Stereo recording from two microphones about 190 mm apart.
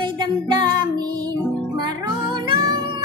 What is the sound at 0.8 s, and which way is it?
Music, 20° right (ahead or behind).